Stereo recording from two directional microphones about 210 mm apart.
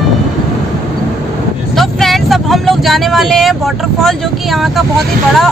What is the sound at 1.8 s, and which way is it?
Vehicle, centre (ahead or behind).